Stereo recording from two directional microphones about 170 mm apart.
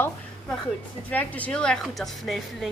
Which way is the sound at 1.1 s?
10° left (ahead or behind).